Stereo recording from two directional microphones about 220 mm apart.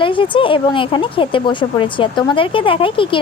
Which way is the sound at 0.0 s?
25° left (ahead or behind).